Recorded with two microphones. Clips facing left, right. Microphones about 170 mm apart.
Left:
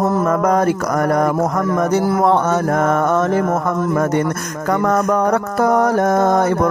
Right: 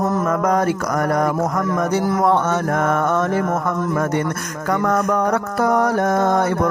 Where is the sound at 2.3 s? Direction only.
40° left (ahead or behind).